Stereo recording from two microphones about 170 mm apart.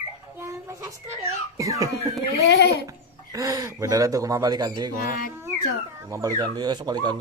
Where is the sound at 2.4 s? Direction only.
90° left.